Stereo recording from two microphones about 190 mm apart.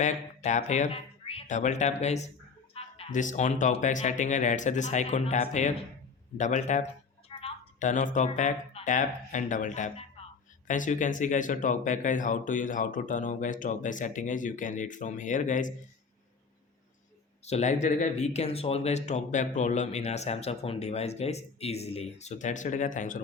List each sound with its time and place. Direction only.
0.0 s speech: 40° left (ahead or behind)
7.3 s a sound: 30° left (ahead or behind)
8.4 s speech: 40° left (ahead or behind)
17.4 s speech: 35° left (ahead or behind)